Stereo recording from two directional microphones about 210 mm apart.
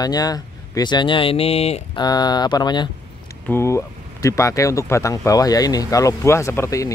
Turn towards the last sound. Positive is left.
turn(degrees=15)  # may be behind; listen again after turning